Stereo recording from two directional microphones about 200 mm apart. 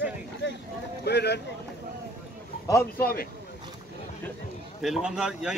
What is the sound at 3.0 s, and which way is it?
Speech, 50° left (ahead or behind).